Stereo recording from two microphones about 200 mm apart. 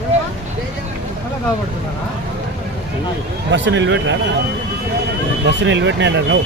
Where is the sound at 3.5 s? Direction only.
65° right (ahead or behind).